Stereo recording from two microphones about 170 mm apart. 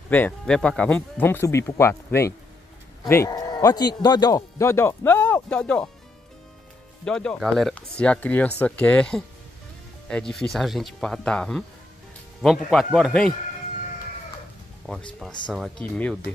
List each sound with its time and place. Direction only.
0.1 s speech: 5° left (ahead or behind)
7.1 s speech: 5° left (ahead or behind)
14.9 s speech: 5° left (ahead or behind)